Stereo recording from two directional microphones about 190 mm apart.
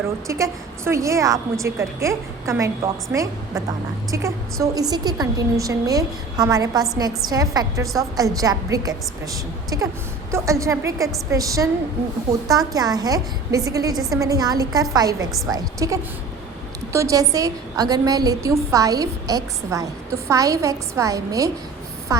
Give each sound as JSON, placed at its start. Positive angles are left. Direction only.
{"t": 0.3, "sound": "a woman's voice", "side_deg": -15}
{"t": 4.6, "sound": "a woman's voice", "side_deg": -20}